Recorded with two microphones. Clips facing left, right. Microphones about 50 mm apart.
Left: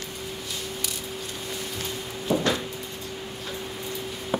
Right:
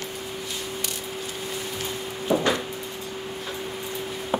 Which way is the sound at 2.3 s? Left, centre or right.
Centre.